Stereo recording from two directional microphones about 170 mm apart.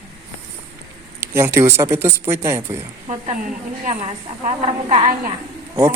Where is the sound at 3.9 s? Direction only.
35° right (ahead or behind).